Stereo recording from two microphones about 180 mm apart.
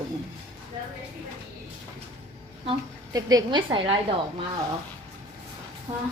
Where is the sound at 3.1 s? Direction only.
20° right (ahead or behind).